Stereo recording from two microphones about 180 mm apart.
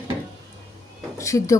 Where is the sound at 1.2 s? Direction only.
15° left (ahead or behind).